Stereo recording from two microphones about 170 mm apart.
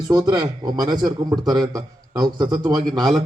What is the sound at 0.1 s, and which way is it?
A man's voice, 25° right (ahead or behind).